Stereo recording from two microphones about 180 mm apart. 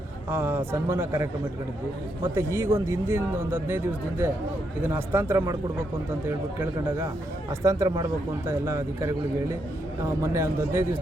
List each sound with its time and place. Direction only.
0.3 s speech: 10° right (ahead or behind)